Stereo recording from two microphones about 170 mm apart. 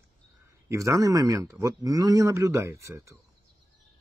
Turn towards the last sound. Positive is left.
turn(degrees=-15)  # may be behind; listen again after turning